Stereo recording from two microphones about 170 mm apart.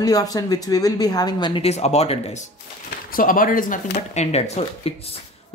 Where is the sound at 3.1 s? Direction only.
55° left (ahead or behind).